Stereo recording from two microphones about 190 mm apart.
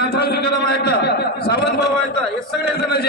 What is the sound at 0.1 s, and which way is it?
A man's voice, 55° left (ahead or behind).